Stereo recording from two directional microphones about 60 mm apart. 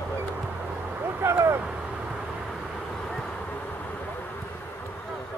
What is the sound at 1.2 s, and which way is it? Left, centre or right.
Vehicle, right.